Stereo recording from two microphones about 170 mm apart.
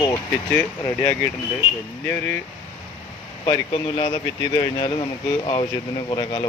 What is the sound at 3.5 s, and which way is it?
Speech, 30° left (ahead or behind).